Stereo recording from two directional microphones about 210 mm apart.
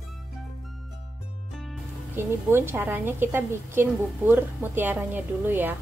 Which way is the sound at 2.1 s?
10° right (ahead or behind).